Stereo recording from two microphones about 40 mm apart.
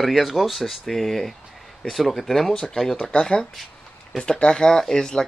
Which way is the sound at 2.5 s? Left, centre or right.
Centre.